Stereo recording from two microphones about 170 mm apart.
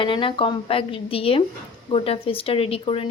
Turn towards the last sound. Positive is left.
turn(degrees=35)  # may be behind; listen again after turning